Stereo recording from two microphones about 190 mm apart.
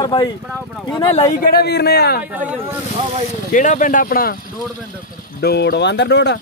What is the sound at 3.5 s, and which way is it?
Speech, 40° left (ahead or behind).